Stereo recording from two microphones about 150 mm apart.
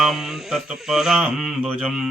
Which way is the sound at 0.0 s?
Centre (ahead or behind).